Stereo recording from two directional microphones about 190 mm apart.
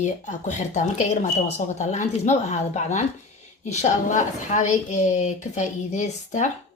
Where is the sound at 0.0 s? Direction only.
40° left (ahead or behind).